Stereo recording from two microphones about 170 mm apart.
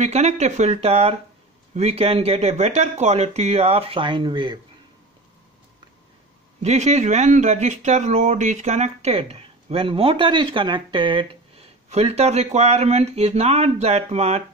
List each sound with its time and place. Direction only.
0.0 s speech: 40° right (ahead or behind)
6.6 s speech: 40° right (ahead or behind)